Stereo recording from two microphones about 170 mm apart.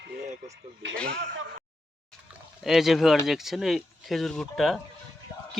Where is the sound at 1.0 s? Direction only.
80° right.